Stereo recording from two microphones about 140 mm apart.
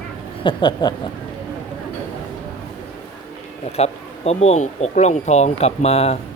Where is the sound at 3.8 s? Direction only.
50° left (ahead or behind).